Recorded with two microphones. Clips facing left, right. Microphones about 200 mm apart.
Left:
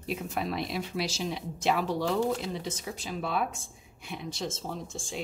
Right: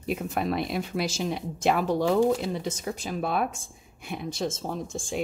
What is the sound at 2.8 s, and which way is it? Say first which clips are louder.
A woman's voice: right 5 dB; 50° right (ahead or behind).